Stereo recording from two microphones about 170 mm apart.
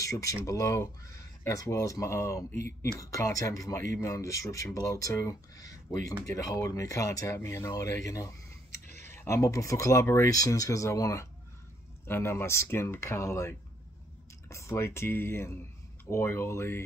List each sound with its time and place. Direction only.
0.0 s speech: 20° left (ahead or behind)
8.7 s a sound: 45° right (ahead or behind)
9.0 s speech: 15° left (ahead or behind)